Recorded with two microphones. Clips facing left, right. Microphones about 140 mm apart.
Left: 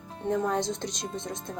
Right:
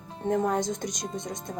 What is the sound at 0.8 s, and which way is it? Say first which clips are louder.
Speech: right 1 dB; 15° right (ahead or behind).